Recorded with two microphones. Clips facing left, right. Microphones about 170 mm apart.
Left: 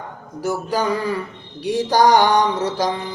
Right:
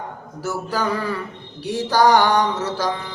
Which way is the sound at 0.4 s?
15° left (ahead or behind).